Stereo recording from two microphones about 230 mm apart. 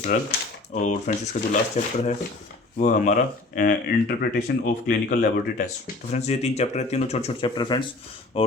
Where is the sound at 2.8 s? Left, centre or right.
Left.